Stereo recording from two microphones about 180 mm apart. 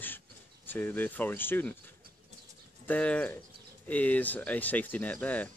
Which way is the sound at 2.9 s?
5° left (ahead or behind).